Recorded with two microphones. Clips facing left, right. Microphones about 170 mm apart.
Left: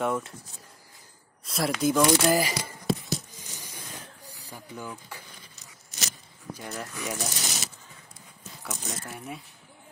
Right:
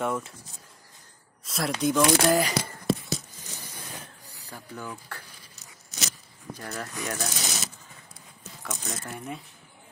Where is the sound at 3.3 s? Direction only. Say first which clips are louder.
Right 1 dB; 15° left (ahead or behind).